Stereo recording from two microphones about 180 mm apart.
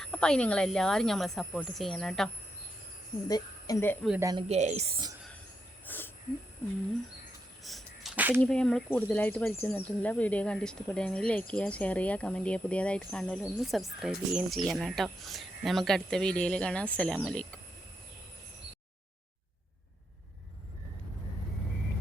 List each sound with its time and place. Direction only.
0.0 s speech: 5° left (ahead or behind)
3.2 s speech: 20° left (ahead or behind)
4.2 s speech: 20° right (ahead or behind)
4.4 s speech: 40° right (ahead or behind)
5.8 s wheeze: 10° left (ahead or behind)
7.6 s a sound: centre (ahead or behind)
8.4 s speech: 5° left (ahead or behind)